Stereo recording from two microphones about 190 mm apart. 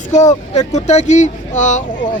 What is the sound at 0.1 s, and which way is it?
Speech, 40° left (ahead or behind).